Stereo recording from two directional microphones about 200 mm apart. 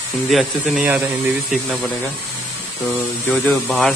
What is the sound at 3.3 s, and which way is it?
Speech, centre (ahead or behind).